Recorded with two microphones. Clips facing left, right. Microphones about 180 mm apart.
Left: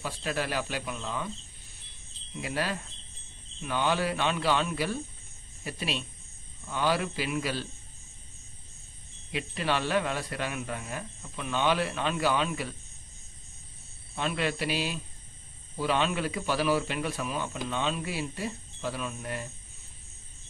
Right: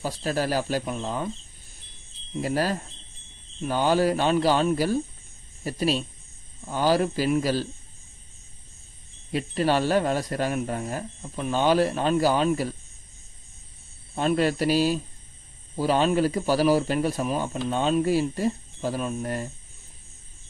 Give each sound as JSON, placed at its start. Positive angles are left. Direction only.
{"t": 0.0, "sound": "a man's voice", "side_deg": -40}
{"t": 2.4, "sound": "a man's voice", "side_deg": -40}
{"t": 9.3, "sound": "a man's voice", "side_deg": -40}
{"t": 14.1, "sound": "a man's voice", "side_deg": -40}